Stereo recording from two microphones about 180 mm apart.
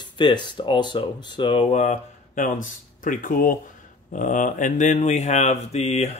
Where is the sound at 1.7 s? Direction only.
40° left (ahead or behind).